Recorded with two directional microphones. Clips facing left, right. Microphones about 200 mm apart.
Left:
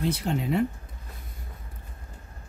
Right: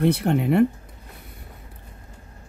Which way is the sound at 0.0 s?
60° right (ahead or behind).